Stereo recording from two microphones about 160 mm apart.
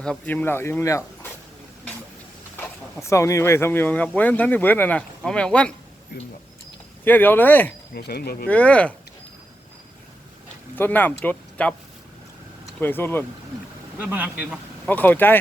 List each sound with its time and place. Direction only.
0.0 s speech: 5° left (ahead or behind)
2.6 s speech: 20° left (ahead or behind)
6.1 s speech: 90° left
7.0 s speech: 10° left (ahead or behind)
7.9 s speech: 75° left (ahead or behind)
8.4 s speech: 10° left (ahead or behind)
10.8 s speech: 10° left (ahead or behind)
12.8 s speech: 15° left (ahead or behind)
14.0 s speech: 10° right (ahead or behind)
14.8 s speech: 10° left (ahead or behind)